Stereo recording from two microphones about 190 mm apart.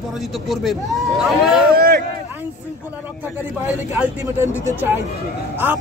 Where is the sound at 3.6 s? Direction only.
10° right (ahead or behind).